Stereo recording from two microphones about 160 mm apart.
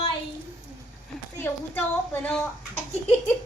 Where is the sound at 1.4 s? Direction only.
15° left (ahead or behind).